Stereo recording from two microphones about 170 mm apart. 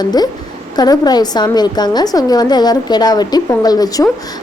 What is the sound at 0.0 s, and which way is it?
A woman's voice, 25° left (ahead or behind).